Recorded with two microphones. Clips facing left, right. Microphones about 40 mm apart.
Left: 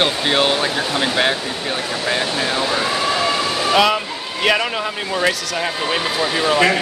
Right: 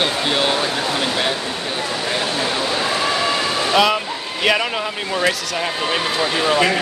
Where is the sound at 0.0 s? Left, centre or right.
Left.